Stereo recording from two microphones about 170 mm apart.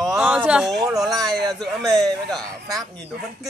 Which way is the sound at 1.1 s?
20° right (ahead or behind).